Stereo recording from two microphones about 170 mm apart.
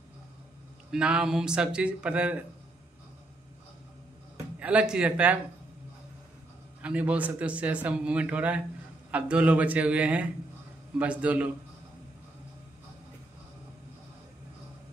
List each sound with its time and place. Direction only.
0.9 s speech: 5° right (ahead or behind)
4.6 s a man's voice: 5° right (ahead or behind)
6.8 s a man's voice: 5° right (ahead or behind)